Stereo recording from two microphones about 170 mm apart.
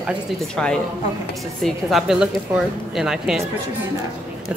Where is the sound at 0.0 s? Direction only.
5° right (ahead or behind).